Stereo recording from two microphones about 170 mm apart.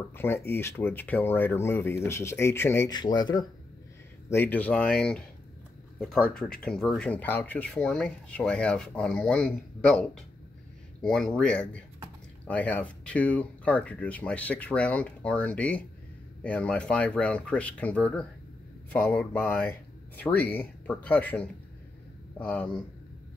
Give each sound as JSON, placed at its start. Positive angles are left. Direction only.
{"t": 0.1, "sound": "speech", "side_deg": 15}
{"t": 2.9, "sound": "speech", "side_deg": 25}
{"t": 4.3, "sound": "speech", "side_deg": 10}